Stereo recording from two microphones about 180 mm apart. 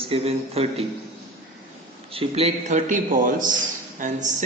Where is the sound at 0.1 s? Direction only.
35° right (ahead or behind).